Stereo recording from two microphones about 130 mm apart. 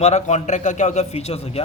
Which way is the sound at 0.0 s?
60° left (ahead or behind).